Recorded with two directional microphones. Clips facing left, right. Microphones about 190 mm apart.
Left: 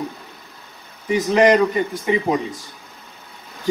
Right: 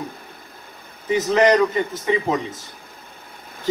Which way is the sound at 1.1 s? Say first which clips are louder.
Left 1 dB; 15° left (ahead or behind).